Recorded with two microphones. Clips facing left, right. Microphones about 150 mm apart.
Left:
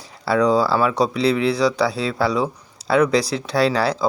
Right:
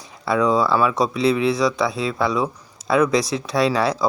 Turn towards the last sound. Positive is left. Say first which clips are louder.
# even
turn(degrees=30)  # may be behind; listen again after turning